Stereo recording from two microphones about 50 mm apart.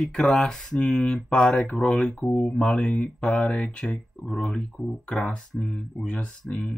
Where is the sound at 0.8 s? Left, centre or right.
Left.